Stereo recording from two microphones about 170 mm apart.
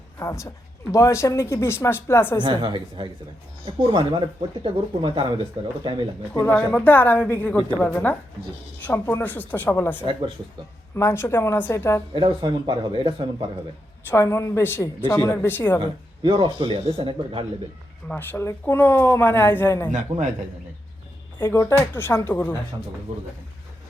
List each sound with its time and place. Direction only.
0.2 s a woman's voice: 15° left (ahead or behind)
2.4 s speech: 25° right (ahead or behind)
6.3 s a woman's voice: 10° left (ahead or behind)
10.0 s speech: 30° right (ahead or behind)
10.9 s a woman's voice: 15° left (ahead or behind)
12.1 s speech: 25° right (ahead or behind)
14.1 s a woman's voice: 15° left (ahead or behind)
15.8 s speech: 30° right (ahead or behind)
18.1 s a woman's voice: 10° left (ahead or behind)
21.3 s a woman's voice: 15° left (ahead or behind)
23.1 s speech: 40° right (ahead or behind)